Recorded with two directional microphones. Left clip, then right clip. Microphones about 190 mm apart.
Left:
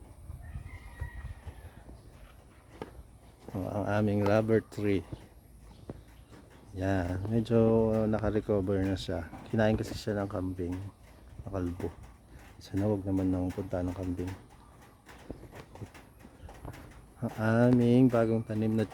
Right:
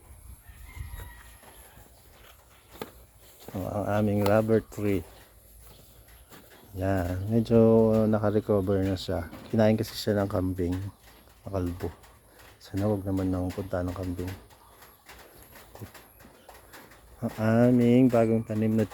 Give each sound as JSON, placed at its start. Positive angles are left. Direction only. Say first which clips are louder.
{"t": 2.8, "sound": "walk", "louder": "right 4 dB", "side_deg": -55}
{"t": 3.6, "sound": "speech", "louder": "right 3 dB", "side_deg": 15}
{"t": 6.7, "sound": "speech", "louder": "right 3 dB", "side_deg": 5}
{"t": 12.6, "sound": "speech", "louder": "right 2 dB", "side_deg": 5}
{"t": 17.4, "sound": "speech", "louder": "right 3 dB", "side_deg": 0}